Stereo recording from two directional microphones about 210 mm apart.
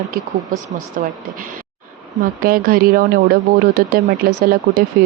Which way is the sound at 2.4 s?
45° right (ahead or behind).